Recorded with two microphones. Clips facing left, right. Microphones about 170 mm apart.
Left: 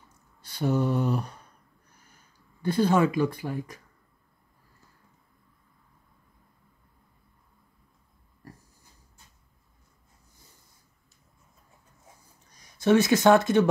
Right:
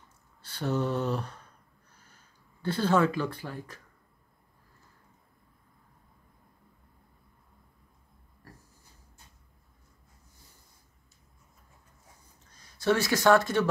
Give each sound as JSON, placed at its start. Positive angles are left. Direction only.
{"t": 0.4, "sound": "a sound", "side_deg": 15}
{"t": 2.6, "sound": "speech", "side_deg": 15}
{"t": 12.4, "sound": "speech", "side_deg": 15}